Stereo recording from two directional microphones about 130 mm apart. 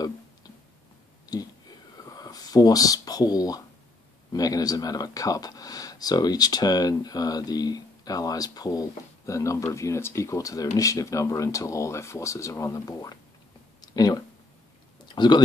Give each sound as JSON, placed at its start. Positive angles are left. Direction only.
{"t": 2.0, "sound": "speech", "side_deg": 30}
{"t": 13.7, "sound": "a sound", "side_deg": 30}
{"t": 15.0, "sound": "speech", "side_deg": 35}